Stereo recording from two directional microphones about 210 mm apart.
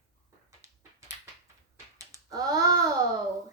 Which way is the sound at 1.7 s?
15° right (ahead or behind).